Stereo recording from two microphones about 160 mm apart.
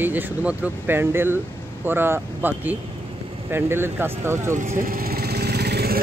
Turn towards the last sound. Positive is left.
turn(degrees=-85)